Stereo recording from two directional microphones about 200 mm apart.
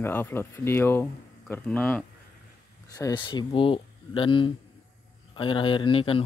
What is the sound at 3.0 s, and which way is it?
Speech, 20° left (ahead or behind).